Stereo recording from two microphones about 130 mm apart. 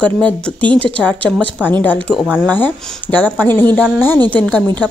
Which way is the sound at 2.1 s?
5° right (ahead or behind).